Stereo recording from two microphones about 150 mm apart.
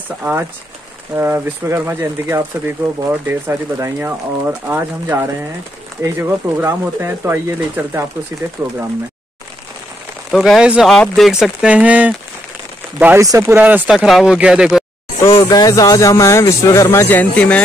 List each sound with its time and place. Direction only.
0.2 s speech: 15° right (ahead or behind)
10.3 s speech: centre (ahead or behind)
15.3 s speech: 25° left (ahead or behind); by 17.6 s 10° left (ahead or behind)